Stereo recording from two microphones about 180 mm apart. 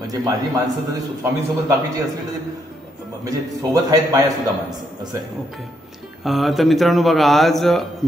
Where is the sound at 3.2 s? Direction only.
20° right (ahead or behind).